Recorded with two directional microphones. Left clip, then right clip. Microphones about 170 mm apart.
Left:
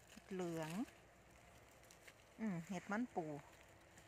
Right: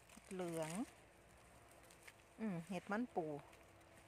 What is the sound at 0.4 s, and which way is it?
Speech, centre (ahead or behind).